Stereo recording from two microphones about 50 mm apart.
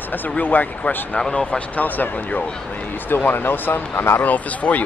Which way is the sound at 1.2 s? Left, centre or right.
Centre.